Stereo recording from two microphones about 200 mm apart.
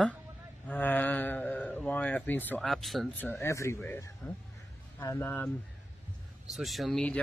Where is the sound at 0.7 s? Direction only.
10° left (ahead or behind).